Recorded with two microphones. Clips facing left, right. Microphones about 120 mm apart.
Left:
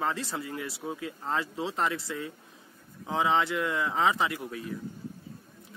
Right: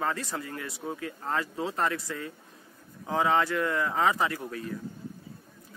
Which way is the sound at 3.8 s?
15° left (ahead or behind).